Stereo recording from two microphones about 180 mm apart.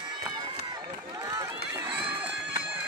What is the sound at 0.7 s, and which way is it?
Run, 20° right (ahead or behind).